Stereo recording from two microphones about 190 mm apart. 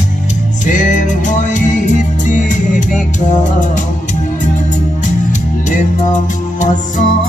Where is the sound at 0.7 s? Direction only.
40° left (ahead or behind).